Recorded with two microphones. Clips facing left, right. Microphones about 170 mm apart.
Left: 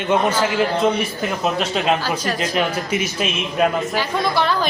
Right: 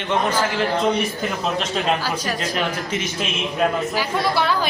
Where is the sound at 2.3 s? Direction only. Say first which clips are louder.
Left 3 dB; 10° left (ahead or behind).